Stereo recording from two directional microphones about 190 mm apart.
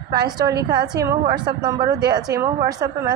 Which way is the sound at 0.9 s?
20° right (ahead or behind).